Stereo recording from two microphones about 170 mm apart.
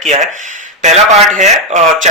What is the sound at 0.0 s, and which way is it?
A man's voice, 45° right (ahead or behind).